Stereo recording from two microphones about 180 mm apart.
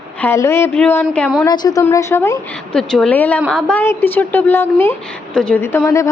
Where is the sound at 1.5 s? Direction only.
20° left (ahead or behind).